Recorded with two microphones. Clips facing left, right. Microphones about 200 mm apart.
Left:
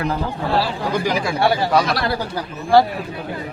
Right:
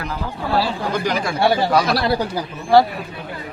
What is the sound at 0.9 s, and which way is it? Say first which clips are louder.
Speech: left 2 dB; 5° left (ahead or behind).